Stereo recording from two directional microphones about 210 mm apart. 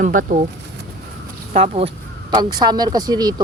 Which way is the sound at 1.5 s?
30° right (ahead or behind).